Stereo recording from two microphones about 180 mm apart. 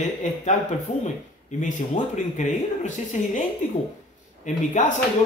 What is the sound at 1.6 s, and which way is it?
A man's voice, 45° left (ahead or behind).